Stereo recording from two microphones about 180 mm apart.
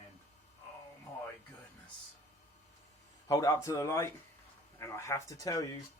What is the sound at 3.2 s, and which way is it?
Speech, 20° left (ahead or behind).